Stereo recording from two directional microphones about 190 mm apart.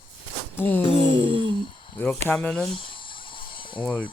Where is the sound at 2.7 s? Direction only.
25° left (ahead or behind).